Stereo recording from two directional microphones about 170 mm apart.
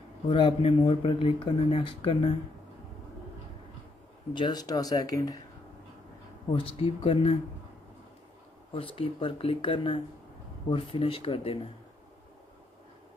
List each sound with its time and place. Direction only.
0.3 s speech: 30° left (ahead or behind)
4.3 s speech: 25° left (ahead or behind)
6.5 s speech: 35° left (ahead or behind)
8.7 s speech: 35° left (ahead or behind)